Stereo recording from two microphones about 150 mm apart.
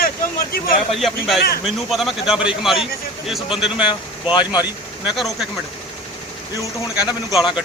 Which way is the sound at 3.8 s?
30° left (ahead or behind).